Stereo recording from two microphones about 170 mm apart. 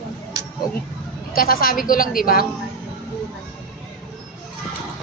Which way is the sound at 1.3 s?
60° left (ahead or behind).